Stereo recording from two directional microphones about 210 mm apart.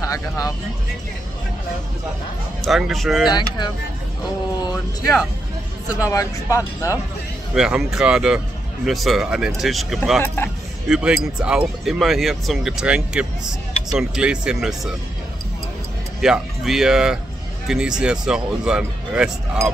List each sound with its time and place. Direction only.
0.0 s speech: 15° left (ahead or behind)
2.6 s speech: centre (ahead or behind)
3.3 s speech: 20° left (ahead or behind)
5.9 s speech: 15° left (ahead or behind)
7.5 s speech: 5° right (ahead or behind)
10.2 s speech: 10° left (ahead or behind)
10.9 s speech: 5° right (ahead or behind)
16.2 s speech: centre (ahead or behind)